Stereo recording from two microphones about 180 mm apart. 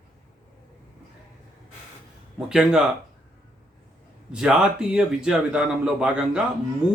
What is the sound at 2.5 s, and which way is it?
Speech, 5° right (ahead or behind).